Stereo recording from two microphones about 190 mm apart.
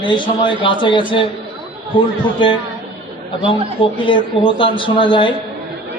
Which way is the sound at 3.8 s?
25° left (ahead or behind).